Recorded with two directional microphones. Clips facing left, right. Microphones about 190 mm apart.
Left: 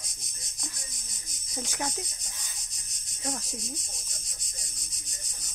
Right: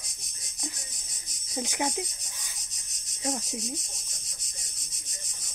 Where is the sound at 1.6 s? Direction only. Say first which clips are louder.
Right 4 dB; 15° right (ahead or behind).